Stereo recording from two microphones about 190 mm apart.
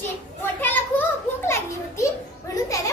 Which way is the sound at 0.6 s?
10° left (ahead or behind).